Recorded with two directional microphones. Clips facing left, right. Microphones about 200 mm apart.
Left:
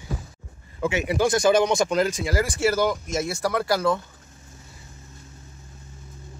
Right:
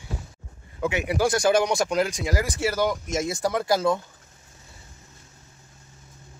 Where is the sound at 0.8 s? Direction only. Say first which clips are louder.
Left 1 dB; 15° right (ahead or behind).